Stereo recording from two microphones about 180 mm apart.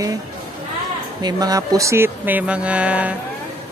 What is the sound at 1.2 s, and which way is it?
Speech, 20° right (ahead or behind).